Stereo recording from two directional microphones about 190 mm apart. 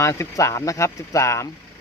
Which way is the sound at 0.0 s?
15° left (ahead or behind).